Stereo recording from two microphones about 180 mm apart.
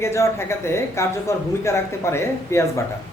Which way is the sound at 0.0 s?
15° left (ahead or behind).